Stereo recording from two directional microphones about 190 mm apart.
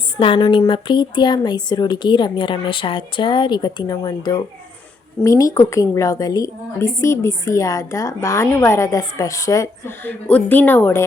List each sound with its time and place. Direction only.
0.2 s a woman's voice: 25° left (ahead or behind)